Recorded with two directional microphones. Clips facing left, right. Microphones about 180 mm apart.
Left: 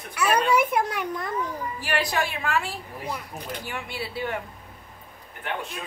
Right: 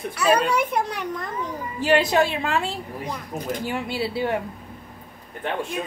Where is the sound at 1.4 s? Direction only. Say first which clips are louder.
Right 3 dB; 25° right (ahead or behind).